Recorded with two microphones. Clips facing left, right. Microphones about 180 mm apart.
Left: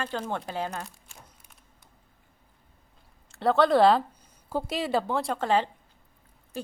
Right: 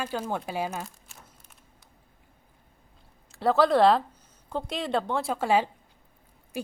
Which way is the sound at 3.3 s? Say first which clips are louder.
Even; centre (ahead or behind).